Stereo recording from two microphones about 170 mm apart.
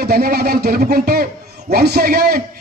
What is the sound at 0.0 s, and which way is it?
A man's voice, 65° right (ahead or behind).